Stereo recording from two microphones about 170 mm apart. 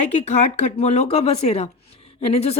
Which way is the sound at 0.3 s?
40° left (ahead or behind).